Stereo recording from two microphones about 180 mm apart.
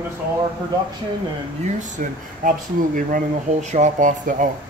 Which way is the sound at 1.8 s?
45° right (ahead or behind).